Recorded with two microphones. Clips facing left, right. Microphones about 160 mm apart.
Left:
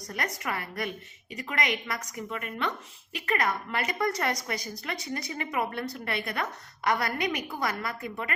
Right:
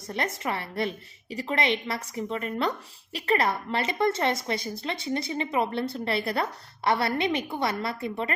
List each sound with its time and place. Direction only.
0.1 s a woman's voice: 25° right (ahead or behind)